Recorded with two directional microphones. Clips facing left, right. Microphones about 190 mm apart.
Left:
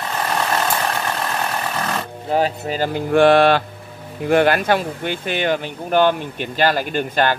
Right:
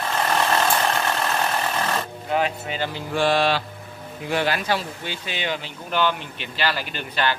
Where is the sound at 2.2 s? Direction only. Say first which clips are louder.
Left 5 dB; 35° left (ahead or behind).